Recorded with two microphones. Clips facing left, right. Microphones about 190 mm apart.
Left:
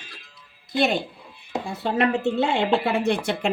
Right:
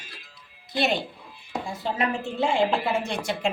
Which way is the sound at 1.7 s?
70° left (ahead or behind).